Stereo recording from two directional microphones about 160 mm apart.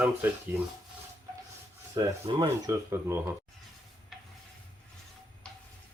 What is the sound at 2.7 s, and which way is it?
Speech, 15° right (ahead or behind).